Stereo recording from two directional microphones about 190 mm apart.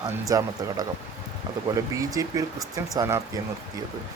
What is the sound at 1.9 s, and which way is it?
Speech, 15° right (ahead or behind).